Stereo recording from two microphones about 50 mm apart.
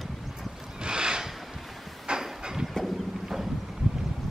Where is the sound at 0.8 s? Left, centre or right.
Centre.